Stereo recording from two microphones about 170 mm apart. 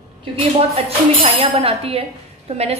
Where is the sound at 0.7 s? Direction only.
35° right (ahead or behind).